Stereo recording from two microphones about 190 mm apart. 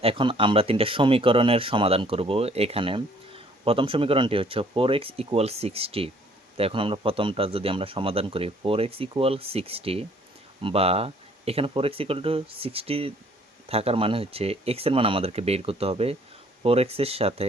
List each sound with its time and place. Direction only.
0.0 s speech: 25° right (ahead or behind)